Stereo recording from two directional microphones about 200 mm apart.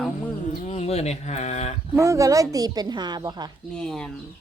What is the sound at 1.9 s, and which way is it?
A woman's voice, 15° right (ahead or behind).